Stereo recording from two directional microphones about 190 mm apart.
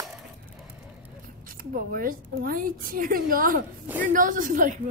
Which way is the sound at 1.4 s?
50° right (ahead or behind).